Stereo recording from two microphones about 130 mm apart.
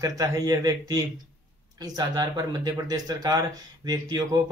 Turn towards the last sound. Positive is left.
turn(degrees=-30)  # may be behind; listen again after turning